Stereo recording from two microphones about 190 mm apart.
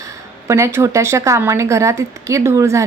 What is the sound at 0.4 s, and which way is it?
Speech, 15° right (ahead or behind).